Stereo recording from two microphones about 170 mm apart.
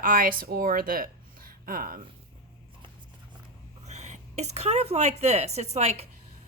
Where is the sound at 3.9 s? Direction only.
45° right (ahead or behind).